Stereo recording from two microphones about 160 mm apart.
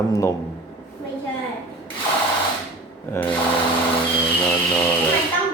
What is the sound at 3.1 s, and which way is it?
Mantra, 10° left (ahead or behind).